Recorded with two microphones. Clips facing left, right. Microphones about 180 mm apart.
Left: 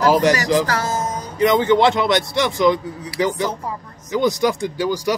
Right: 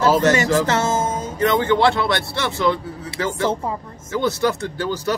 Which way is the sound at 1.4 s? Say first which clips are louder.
Left 2 dB; 15° left (ahead or behind).